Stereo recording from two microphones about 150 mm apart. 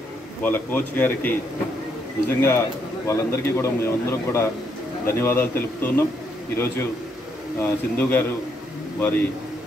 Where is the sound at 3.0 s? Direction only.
20° left (ahead or behind).